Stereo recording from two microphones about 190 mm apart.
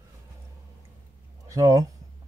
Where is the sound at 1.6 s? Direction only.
20° right (ahead or behind).